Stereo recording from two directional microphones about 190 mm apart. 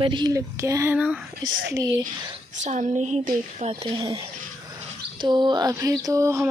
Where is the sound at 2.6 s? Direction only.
40° right (ahead or behind).